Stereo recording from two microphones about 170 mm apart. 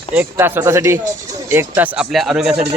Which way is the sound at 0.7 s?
15° right (ahead or behind).